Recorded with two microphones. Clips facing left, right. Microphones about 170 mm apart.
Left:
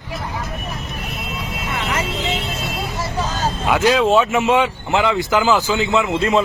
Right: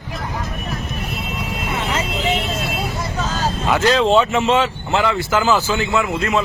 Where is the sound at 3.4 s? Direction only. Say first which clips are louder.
Even; 15° left (ahead or behind).